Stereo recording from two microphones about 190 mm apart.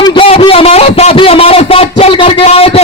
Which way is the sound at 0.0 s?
25° left (ahead or behind).